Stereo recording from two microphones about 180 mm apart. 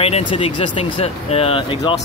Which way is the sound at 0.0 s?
35° left (ahead or behind).